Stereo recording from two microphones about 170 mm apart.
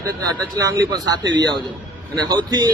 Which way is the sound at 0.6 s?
20° right (ahead or behind).